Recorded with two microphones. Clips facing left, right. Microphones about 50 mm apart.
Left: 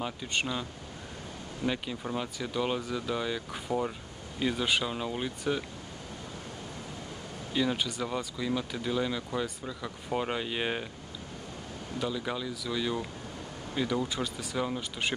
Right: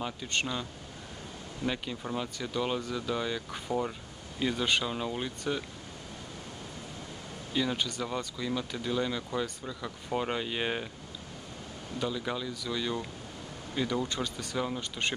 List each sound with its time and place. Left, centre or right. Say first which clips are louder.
0.3 s speech: even; centre
1.6 s speech: left 1 dB; centre
7.5 s speech: left 1 dB; centre
12.0 s speech: even; centre